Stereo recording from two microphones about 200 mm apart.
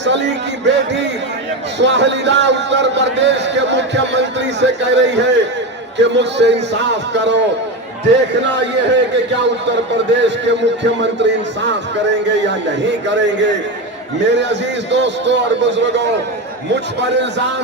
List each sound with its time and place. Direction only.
0.0 s a man's voice: 60° right (ahead or behind)
1.8 s a man's voice: 60° right (ahead or behind)